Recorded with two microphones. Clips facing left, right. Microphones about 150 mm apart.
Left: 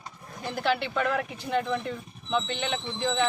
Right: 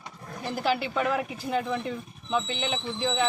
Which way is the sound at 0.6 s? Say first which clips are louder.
Even; 5° right (ahead or behind).